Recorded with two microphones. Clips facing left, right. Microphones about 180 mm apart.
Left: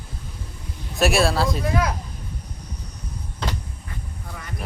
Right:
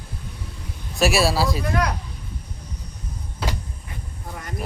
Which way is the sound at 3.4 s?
5° right (ahead or behind).